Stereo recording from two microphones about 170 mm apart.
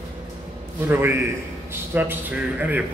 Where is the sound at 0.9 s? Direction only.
15° right (ahead or behind).